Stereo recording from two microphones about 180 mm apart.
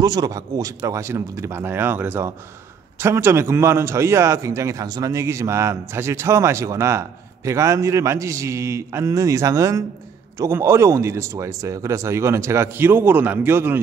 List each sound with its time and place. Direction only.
0.0 s a man's voice: 20° right (ahead or behind)